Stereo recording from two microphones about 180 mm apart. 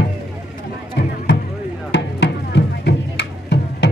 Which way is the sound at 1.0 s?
70° left (ahead or behind).